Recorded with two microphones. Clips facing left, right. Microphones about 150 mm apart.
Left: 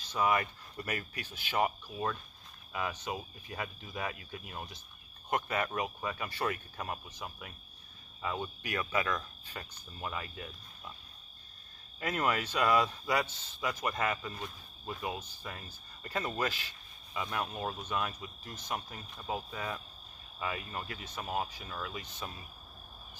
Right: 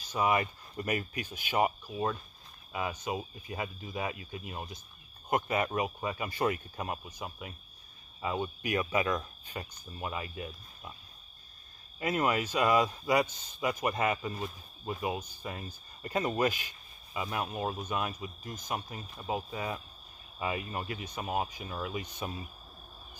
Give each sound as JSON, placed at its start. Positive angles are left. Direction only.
{"t": 0.0, "sound": "speech", "side_deg": -10}
{"t": 12.0, "sound": "speech", "side_deg": -10}